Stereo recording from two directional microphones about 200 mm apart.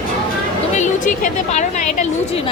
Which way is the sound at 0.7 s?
40° left (ahead or behind).